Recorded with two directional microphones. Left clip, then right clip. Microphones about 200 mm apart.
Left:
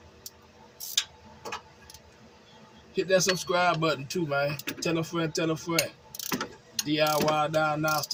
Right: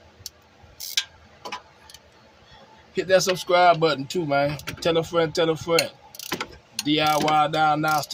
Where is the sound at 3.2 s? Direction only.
50° right (ahead or behind).